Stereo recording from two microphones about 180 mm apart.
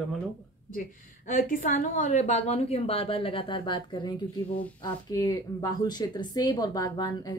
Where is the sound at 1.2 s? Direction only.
50° left (ahead or behind).